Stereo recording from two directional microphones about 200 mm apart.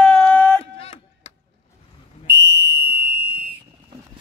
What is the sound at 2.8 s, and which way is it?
Fire alarm, 10° right (ahead or behind).